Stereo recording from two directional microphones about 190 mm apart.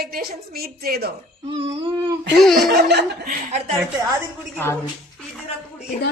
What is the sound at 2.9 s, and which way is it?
Speech, 60° right (ahead or behind).